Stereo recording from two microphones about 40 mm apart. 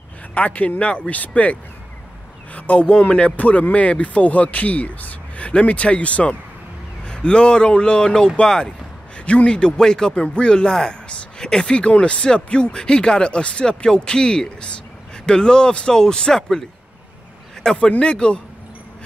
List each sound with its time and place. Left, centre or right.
0.3 s speech: left
7.1 s speech: left
17.7 s speech: left